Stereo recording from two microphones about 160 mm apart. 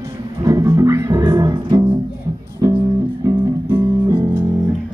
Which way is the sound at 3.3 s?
30° right (ahead or behind).